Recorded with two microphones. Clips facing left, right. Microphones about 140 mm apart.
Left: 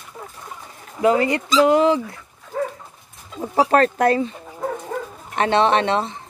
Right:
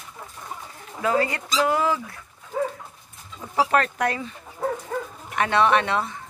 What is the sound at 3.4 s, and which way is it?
Speech, 40° left (ahead or behind).